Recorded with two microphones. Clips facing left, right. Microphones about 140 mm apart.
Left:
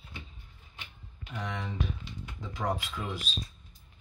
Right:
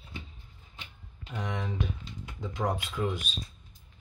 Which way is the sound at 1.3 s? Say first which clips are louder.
Right 2 dB; 15° right (ahead or behind).